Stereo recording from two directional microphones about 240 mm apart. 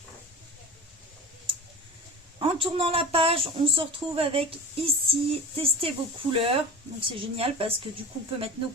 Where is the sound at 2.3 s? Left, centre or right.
Right.